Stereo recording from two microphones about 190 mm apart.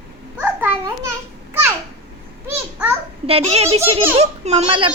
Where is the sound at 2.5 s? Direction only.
15° right (ahead or behind).